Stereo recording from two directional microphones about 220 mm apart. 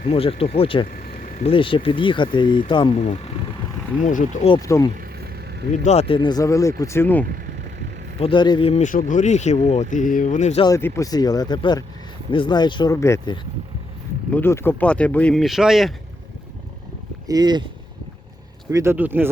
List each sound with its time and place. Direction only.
0.0 s speech: 25° left (ahead or behind)
0.9 s vehicle: 35° left (ahead or behind)
1.5 s speech: 25° left (ahead or behind)
4.4 s speech: 15° left (ahead or behind)
4.9 s vehicle: 45° right (ahead or behind)
5.7 s speech: 30° left (ahead or behind); by 7.3 s 10° left (ahead or behind)
8.2 s speech: 20° left (ahead or behind)
10.7 s speech: 10° left (ahead or behind)
17.2 s speech: 20° right (ahead or behind)
18.7 s speech: 10° right (ahead or behind)